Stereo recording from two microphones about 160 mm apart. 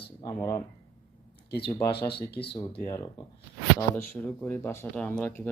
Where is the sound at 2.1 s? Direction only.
90° left.